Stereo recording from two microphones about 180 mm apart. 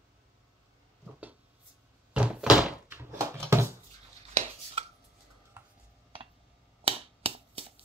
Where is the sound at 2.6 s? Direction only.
10° right (ahead or behind).